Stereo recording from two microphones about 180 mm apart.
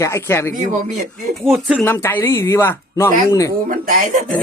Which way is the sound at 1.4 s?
Centre (ahead or behind).